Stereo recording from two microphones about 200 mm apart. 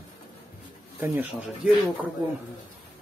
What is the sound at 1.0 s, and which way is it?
Speech, 10° right (ahead or behind).